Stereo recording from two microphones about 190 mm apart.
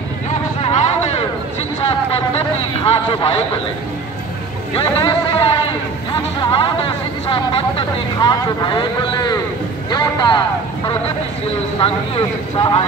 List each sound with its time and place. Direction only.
0.6 s a sound: 30° left (ahead or behind)
2.8 s speech: 30° left (ahead or behind)
4.7 s a man's voice: 30° left (ahead or behind)
11.8 s speech: 30° left (ahead or behind)